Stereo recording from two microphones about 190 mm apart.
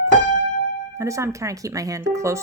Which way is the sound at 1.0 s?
15° right (ahead or behind).